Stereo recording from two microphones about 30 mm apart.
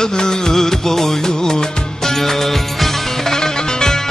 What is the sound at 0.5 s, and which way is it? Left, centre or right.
Music of bollywood, centre.